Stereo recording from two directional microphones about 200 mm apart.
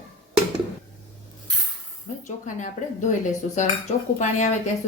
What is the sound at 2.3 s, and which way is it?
Speech, 40° left (ahead or behind).